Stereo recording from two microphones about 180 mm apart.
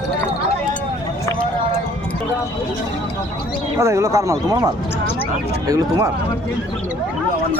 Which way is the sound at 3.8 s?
15° right (ahead or behind).